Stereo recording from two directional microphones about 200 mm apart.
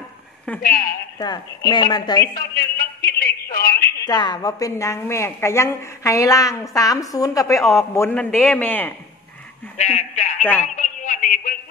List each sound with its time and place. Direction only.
0.6 s a woman's voice: 45° left (ahead or behind)
1.7 s speech: 20° left (ahead or behind)
2.3 s a sound: 50° left (ahead or behind)
4.0 s a woman's voice: 20° left (ahead or behind)
9.8 s speech: 35° left (ahead or behind)
10.6 s a sound: 40° left (ahead or behind)